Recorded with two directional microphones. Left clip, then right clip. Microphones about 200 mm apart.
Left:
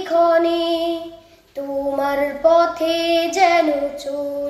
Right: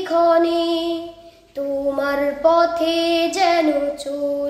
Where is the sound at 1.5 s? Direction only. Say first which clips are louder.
Right 1 dB; 20° right (ahead or behind).